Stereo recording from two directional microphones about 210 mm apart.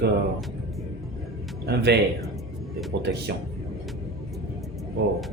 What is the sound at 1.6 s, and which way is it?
Speech, 50° right (ahead or behind).